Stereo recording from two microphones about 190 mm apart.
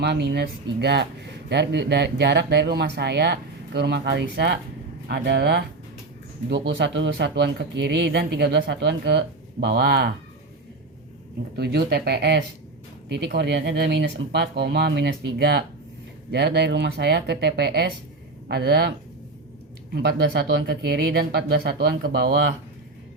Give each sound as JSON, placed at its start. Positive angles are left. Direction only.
{"t": 0.0, "sound": "speech", "side_deg": -60}
{"t": 11.5, "sound": "speech", "side_deg": -55}